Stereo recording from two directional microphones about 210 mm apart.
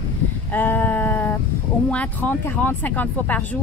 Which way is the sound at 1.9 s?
5° left (ahead or behind).